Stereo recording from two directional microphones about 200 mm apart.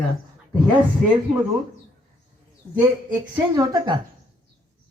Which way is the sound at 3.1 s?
15° right (ahead or behind).